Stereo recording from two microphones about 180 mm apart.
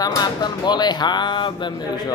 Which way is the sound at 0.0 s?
25° left (ahead or behind).